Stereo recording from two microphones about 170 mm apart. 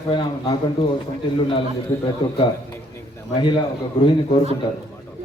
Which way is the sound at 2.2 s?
25° left (ahead or behind).